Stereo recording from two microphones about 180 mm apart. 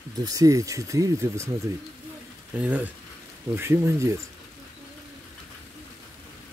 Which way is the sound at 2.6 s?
10° right (ahead or behind).